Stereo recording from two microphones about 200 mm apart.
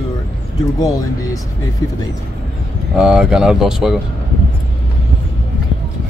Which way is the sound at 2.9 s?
5° right (ahead or behind).